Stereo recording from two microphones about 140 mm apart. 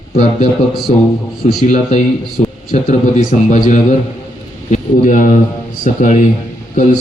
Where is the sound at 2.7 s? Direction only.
65° left (ahead or behind).